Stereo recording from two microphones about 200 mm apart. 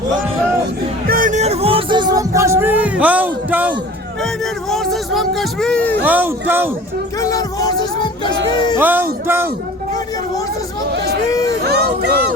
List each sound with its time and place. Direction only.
1.0 s music: 45° right (ahead or behind); by 3.8 s 10° right (ahead or behind)
4.7 s speech: centre (ahead or behind)
6.0 s speech: 10° right (ahead or behind)
7.2 s music: 15° left (ahead or behind)
8.8 s speech: 10° right (ahead or behind)
11.6 s speech: 55° right (ahead or behind)